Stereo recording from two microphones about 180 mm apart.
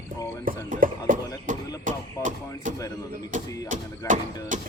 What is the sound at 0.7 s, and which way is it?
Speech, 45° right (ahead or behind).